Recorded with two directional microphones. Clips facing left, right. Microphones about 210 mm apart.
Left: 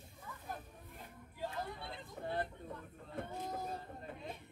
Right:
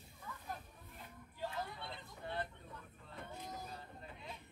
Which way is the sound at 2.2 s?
50° left (ahead or behind).